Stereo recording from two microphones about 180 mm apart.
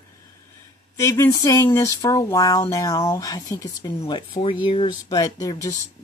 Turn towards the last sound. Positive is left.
turn(degrees=20)  # may be behind; listen again after turning